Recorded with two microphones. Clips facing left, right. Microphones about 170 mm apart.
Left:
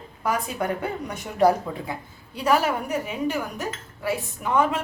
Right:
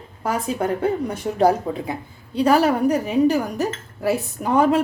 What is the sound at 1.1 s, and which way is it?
Speech, 25° right (ahead or behind).